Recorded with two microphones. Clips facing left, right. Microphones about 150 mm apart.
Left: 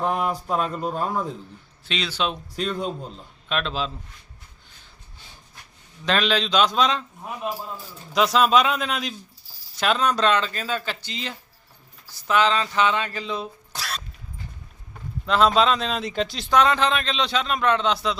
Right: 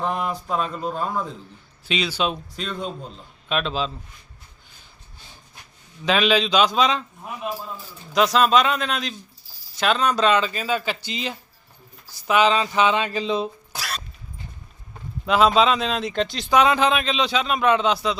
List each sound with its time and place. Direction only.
0.0 s speech: 5° left (ahead or behind)
1.9 s speech: 5° right (ahead or behind)
6.1 s speech: 5° right (ahead or behind)
8.1 s speech: centre (ahead or behind); by 13.5 s 20° right (ahead or behind)
13.7 s a sound: centre (ahead or behind)
15.3 s speech: 5° right (ahead or behind)